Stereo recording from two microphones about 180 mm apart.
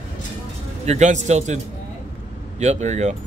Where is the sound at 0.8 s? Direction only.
40° right (ahead or behind).